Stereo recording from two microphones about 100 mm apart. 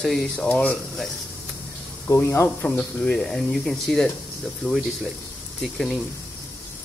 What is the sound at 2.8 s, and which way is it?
Speech, 10° left (ahead or behind).